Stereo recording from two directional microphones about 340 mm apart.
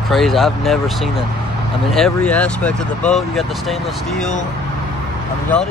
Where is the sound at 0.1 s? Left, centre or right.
Centre.